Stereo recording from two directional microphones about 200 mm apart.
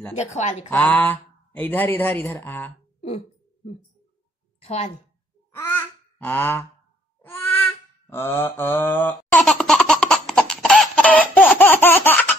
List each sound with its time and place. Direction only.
0.1 s speech: 35° left (ahead or behind)
0.7 s speech: 10° left (ahead or behind)
4.6 s speech: 35° left (ahead or behind)
5.5 s a sound: 10° left (ahead or behind)
7.2 s mantra: 10° left (ahead or behind)